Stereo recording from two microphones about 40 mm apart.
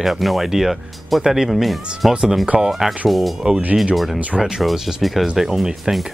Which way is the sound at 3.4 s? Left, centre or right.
Centre.